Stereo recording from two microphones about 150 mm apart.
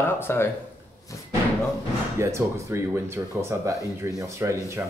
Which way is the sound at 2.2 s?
20° right (ahead or behind).